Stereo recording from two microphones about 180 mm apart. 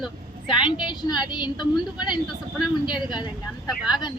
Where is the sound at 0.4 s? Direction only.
25° left (ahead or behind).